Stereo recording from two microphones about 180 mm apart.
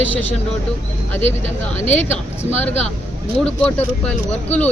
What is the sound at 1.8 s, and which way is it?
Speech, 40° left (ahead or behind).